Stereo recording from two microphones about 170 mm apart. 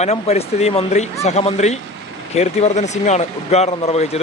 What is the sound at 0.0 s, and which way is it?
A man's voice, 40° left (ahead or behind).